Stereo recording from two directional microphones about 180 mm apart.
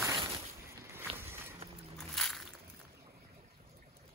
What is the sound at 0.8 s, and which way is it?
Boat, 15° right (ahead or behind).